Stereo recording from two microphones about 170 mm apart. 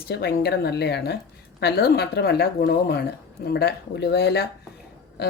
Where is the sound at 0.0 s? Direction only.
70° left (ahead or behind).